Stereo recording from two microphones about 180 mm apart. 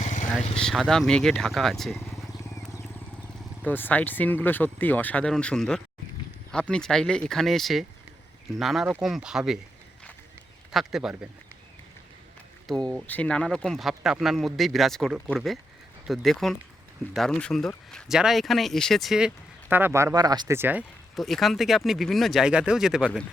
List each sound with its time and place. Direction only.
0.0 s vehicle: 40° left (ahead or behind)
0.5 s speech: centre (ahead or behind)
3.6 s speech: 10° left (ahead or behind)
10.7 s speech: centre (ahead or behind)
12.6 s speech: 5° left (ahead or behind); by 20.6 s 20° right (ahead or behind)
20.6 s speech: 10° right (ahead or behind)
21.2 s speech: centre (ahead or behind)